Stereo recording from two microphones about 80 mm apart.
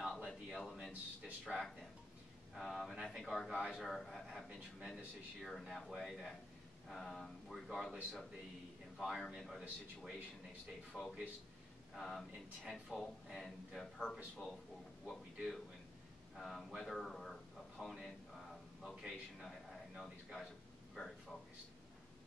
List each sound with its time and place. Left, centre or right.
0.0 s a sound: centre
2.5 s a man's voice: centre
10.9 s a man's voice: left
11.9 s a man's voice: centre
15.0 s a man's voice: centre
18.8 s a sound: centre